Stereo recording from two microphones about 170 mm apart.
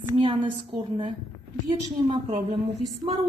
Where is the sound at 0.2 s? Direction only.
30° right (ahead or behind).